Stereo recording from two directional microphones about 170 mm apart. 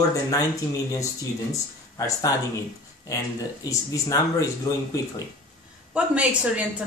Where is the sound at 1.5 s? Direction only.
20° left (ahead or behind).